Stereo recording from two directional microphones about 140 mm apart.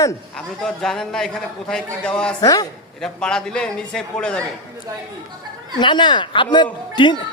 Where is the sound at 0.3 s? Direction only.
5° left (ahead or behind).